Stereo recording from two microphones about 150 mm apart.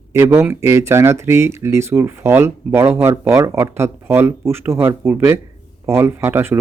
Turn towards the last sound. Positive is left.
turn(degrees=-15)  # may be behind; listen again after turning